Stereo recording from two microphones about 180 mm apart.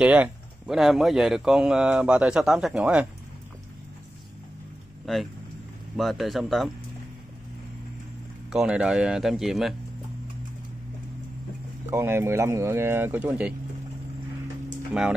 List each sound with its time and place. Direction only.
0.0 s a man's voice: 5° right (ahead or behind)
5.0 s a man's voice: centre (ahead or behind)
8.5 s a man's voice: 5° right (ahead or behind)
11.9 s speech: 15° right (ahead or behind)